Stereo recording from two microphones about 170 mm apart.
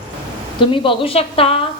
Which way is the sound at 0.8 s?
35° left (ahead or behind).